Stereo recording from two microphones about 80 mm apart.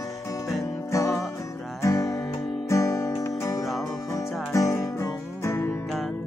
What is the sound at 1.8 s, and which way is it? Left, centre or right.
Music, left.